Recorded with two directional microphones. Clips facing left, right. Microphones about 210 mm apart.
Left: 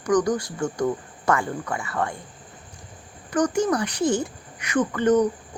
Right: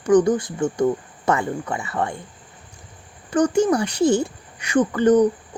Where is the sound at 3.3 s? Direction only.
30° right (ahead or behind).